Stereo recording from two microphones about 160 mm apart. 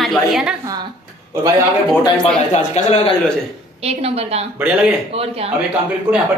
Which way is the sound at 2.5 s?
45° left (ahead or behind).